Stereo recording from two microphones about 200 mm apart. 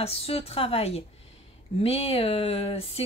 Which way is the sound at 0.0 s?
30° left (ahead or behind).